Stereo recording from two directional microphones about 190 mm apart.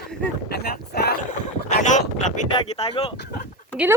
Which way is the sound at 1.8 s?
40° left (ahead or behind).